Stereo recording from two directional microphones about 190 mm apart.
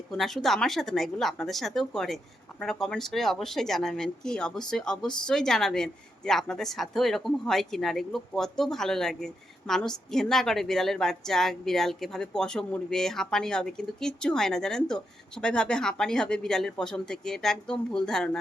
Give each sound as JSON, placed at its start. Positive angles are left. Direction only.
{"t": 0.1, "sound": "a woman's voice", "side_deg": 0}